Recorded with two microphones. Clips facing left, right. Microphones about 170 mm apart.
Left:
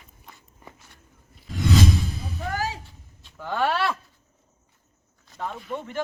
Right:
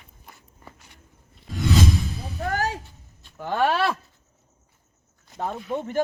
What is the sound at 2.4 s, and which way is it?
Music, 60° right (ahead or behind).